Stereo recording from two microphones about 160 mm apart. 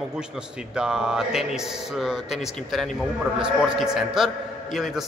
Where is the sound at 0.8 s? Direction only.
5° right (ahead or behind).